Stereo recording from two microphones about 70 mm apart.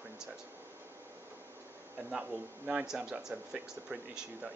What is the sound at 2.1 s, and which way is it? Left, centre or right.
Speech, centre.